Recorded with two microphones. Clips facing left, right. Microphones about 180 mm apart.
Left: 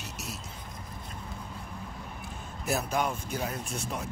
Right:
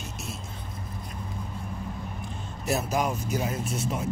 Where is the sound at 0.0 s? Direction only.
70° left (ahead or behind).